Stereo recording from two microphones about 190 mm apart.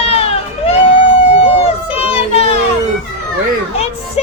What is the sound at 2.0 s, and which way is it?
Child singing, 35° left (ahead or behind).